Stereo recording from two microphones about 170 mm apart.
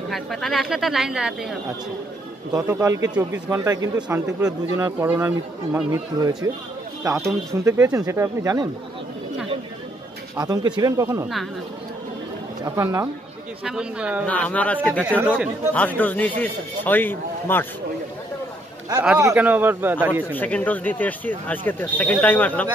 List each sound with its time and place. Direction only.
0.1 s a man's voice: centre (ahead or behind); by 8.6 s 20° right (ahead or behind)
10.3 s speech: 20° right (ahead or behind)
12.6 s a man's voice: 15° right (ahead or behind)
14.2 s speech: 10° left (ahead or behind)
15.0 s a man's voice: 10° right (ahead or behind)
15.7 s speech: 10° left (ahead or behind)
19.1 s a man's voice: 15° right (ahead or behind)
20.2 s speech: 10° left (ahead or behind)